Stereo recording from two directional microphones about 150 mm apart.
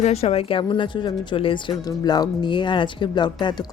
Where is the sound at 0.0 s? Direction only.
45° left (ahead or behind).